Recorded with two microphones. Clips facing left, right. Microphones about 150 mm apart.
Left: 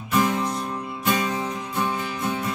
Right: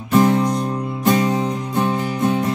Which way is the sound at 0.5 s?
40° right (ahead or behind).